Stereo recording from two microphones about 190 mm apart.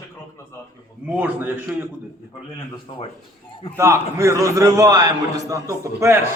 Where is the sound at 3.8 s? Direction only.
15° right (ahead or behind).